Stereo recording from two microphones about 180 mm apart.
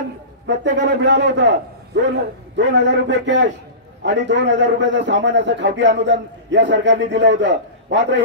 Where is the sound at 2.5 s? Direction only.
80° right.